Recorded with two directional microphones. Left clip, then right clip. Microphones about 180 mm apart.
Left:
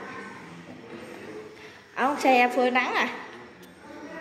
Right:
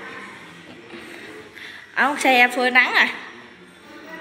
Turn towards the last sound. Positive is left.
turn(degrees=5)  # may be behind; listen again after turning